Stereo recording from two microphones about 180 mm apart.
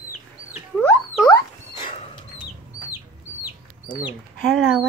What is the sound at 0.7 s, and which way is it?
Rodents, 15° left (ahead or behind).